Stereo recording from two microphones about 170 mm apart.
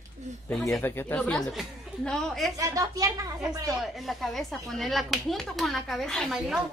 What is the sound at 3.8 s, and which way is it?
Speech, centre (ahead or behind).